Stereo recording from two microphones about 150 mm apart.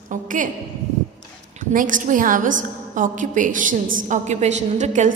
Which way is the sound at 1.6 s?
65° right (ahead or behind).